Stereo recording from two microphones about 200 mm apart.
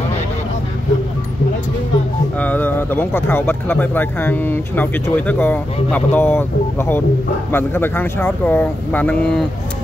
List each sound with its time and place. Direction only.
2.3 s speech: 10° left (ahead or behind)